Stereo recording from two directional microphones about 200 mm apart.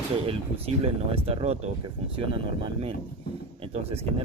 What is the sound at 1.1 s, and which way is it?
Speech, 30° right (ahead or behind).